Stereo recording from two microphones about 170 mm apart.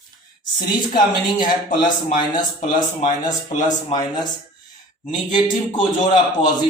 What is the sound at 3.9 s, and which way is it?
Speech, 25° left (ahead or behind).